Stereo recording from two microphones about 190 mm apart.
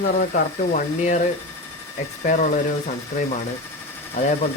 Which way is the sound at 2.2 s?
45° left (ahead or behind).